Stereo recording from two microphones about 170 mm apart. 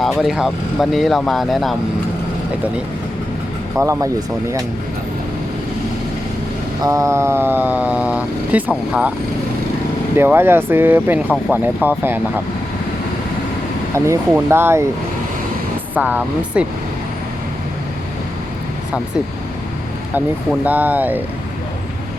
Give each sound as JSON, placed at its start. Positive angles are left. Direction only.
{"t": 0.0, "sound": "speech", "side_deg": 0}
{"t": 3.8, "sound": "speech", "side_deg": -15}
{"t": 6.8, "sound": "speech", "side_deg": -15}
{"t": 10.2, "sound": "speech", "side_deg": -15}
{"t": 13.9, "sound": "speech", "side_deg": -15}
{"t": 16.0, "sound": "speech", "side_deg": -5}
{"t": 20.7, "sound": "speech", "side_deg": -10}